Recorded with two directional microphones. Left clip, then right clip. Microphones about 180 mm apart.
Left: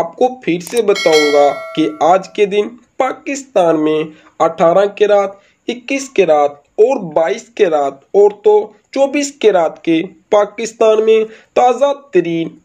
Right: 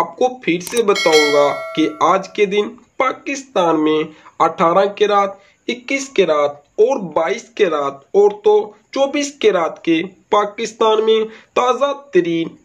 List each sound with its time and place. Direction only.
0.0 s speech: 20° left (ahead or behind)
0.9 s speech: centre (ahead or behind)
2.0 s speech: 20° left (ahead or behind)